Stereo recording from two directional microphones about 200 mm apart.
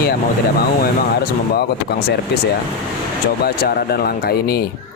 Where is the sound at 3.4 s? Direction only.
50° left (ahead or behind).